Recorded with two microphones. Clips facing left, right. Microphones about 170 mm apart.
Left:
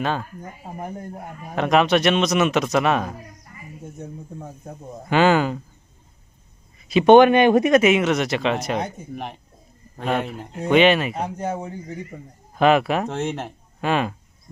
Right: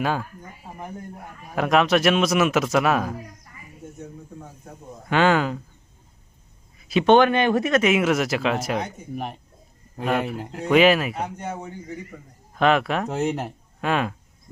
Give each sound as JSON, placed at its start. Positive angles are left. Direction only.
{"t": 0.0, "sound": "speech", "side_deg": -10}
{"t": 1.5, "sound": "speech", "side_deg": 0}
{"t": 5.0, "sound": "speech", "side_deg": 5}
{"t": 7.0, "sound": "speech", "side_deg": 15}
{"t": 7.9, "sound": "speech", "side_deg": -5}
{"t": 12.5, "sound": "speech", "side_deg": 5}